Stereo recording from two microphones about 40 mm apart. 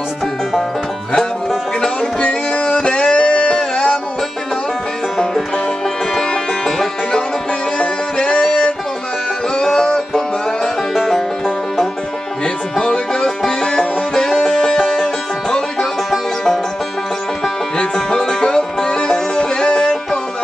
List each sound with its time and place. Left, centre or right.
1.8 s music: centre
2.2 s music: left
3.3 s a sound: left
5.1 s music: centre
9.8 s music: centre
12.7 s music: centre
17.7 s music: centre